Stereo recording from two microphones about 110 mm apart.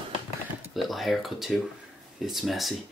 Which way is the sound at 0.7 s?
Centre (ahead or behind).